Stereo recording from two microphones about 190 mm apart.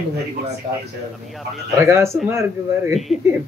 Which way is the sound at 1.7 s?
15° right (ahead or behind).